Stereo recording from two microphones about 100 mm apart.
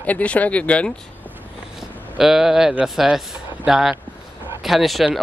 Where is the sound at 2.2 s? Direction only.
5° right (ahead or behind).